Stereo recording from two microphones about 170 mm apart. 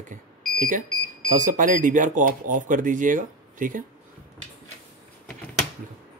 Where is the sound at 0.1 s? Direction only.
50° right (ahead or behind).